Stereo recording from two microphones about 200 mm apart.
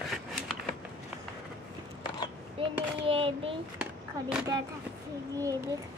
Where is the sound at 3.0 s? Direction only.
25° right (ahead or behind).